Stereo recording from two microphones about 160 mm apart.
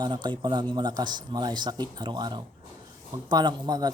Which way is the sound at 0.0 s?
30° right (ahead or behind).